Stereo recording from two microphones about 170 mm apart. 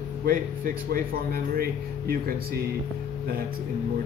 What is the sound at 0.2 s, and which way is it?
Speech, 60° right (ahead or behind).